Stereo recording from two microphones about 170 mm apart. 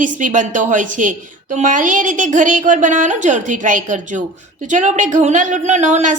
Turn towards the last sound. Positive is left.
turn(degrees=-45)  # may be behind; listen again after turning